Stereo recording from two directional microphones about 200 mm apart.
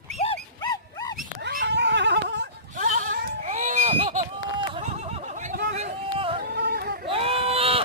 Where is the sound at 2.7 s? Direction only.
40° right (ahead or behind).